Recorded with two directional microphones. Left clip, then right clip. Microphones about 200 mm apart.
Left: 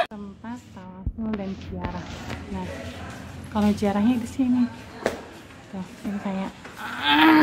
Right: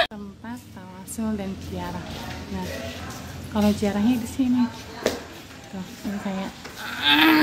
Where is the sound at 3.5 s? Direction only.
10° left (ahead or behind).